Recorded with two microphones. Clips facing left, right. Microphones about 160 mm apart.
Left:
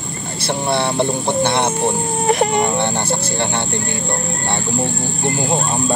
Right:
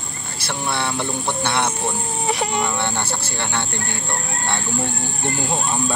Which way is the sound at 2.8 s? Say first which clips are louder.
Left 5 dB; 15° left (ahead or behind).